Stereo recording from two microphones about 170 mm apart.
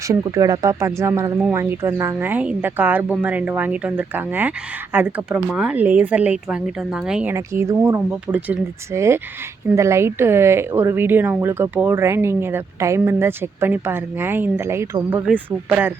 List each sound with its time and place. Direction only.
0.1 s a woman's voice: 20° right (ahead or behind)